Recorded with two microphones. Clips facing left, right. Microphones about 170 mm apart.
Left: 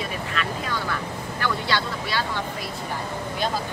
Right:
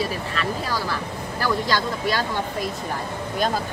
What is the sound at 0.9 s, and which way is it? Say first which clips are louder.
Speech: right 1 dB; 40° right (ahead or behind).